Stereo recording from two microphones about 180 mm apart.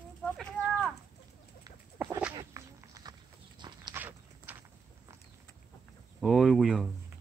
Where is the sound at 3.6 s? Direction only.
25° right (ahead or behind).